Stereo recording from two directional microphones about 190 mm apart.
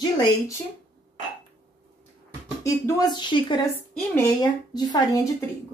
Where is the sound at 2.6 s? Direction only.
20° left (ahead or behind).